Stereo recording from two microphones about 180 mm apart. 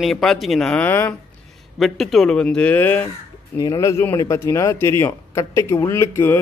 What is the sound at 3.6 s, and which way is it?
Speech, 20° left (ahead or behind).